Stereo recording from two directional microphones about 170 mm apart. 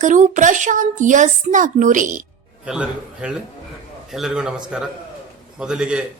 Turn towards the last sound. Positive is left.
turn(degrees=-5)  # may be behind; listen again after turning